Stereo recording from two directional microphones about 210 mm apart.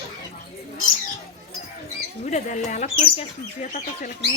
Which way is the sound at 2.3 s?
35° left (ahead or behind).